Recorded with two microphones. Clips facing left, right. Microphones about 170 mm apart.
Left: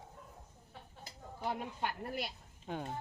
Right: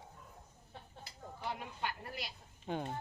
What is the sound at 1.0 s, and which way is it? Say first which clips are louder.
Speech: left 3 dB; 45° left (ahead or behind).